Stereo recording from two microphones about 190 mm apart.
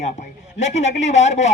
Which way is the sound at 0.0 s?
35° left (ahead or behind).